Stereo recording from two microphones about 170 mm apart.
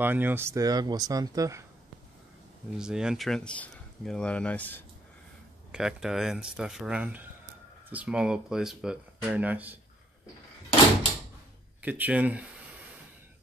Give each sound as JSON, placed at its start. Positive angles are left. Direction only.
{"t": 0.0, "sound": "speech", "side_deg": -10}
{"t": 2.8, "sound": "speech", "side_deg": -5}
{"t": 5.7, "sound": "speech", "side_deg": -5}
{"t": 11.8, "sound": "speech", "side_deg": -10}